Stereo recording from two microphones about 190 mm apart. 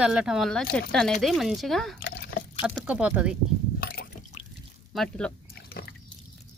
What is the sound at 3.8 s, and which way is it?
Liquid, 55° left (ahead or behind).